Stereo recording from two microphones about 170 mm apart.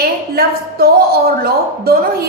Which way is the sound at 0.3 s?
65° right (ahead or behind).